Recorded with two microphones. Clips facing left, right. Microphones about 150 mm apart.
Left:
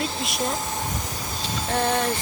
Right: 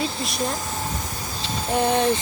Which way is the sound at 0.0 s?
Centre (ahead or behind).